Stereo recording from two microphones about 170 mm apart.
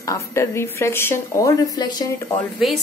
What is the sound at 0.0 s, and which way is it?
A woman's voice, 20° left (ahead or behind).